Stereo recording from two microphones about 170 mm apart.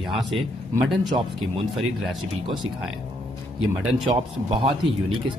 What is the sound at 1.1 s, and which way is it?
Speech, 30° right (ahead or behind).